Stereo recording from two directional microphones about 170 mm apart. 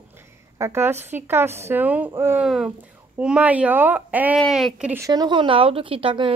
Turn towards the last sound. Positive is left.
turn(degrees=-30)  # may be behind; listen again after turning